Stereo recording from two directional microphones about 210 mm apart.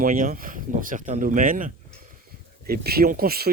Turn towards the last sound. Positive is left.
turn(degrees=-45)  # may be behind; listen again after turning